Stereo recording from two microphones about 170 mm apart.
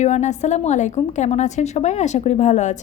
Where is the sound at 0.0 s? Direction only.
45° left (ahead or behind).